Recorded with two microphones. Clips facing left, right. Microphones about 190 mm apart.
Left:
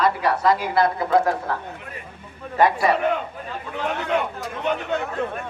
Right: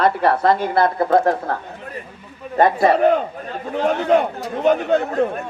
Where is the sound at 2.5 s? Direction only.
40° right (ahead or behind).